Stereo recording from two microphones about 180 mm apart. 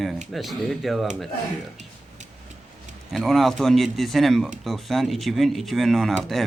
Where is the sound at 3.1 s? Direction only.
Centre (ahead or behind).